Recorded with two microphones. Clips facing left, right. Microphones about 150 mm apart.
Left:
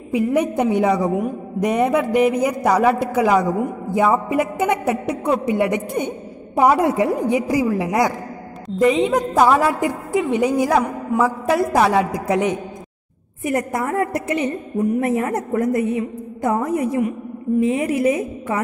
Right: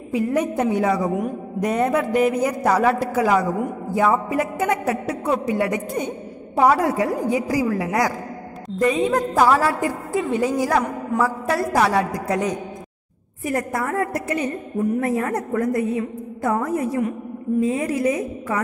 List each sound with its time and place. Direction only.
0.1 s a woman's voice: 15° left (ahead or behind)
13.4 s a woman's voice: 20° left (ahead or behind)